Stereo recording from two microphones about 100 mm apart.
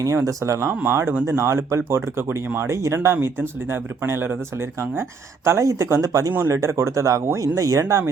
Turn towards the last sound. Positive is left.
turn(degrees=-35)  # may be behind; listen again after turning